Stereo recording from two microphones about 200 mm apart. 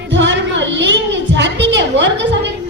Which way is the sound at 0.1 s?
65° right (ahead or behind).